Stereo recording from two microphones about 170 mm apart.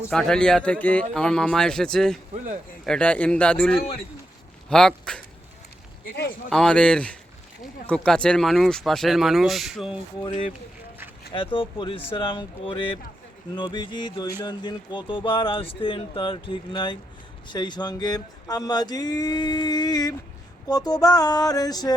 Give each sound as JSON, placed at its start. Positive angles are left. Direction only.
{"t": 0.1, "sound": "a man's voice", "side_deg": 5}
{"t": 6.5, "sound": "speech", "side_deg": 5}
{"t": 11.3, "sound": "speech", "side_deg": 30}